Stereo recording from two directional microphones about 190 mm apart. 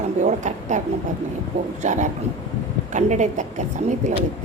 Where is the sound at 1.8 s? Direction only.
40° right (ahead or behind).